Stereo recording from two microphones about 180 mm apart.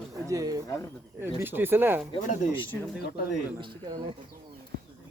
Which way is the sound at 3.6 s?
25° right (ahead or behind).